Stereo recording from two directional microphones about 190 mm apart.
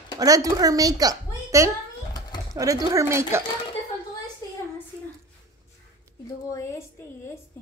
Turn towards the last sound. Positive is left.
turn(degrees=15)  # may be behind; listen again after turning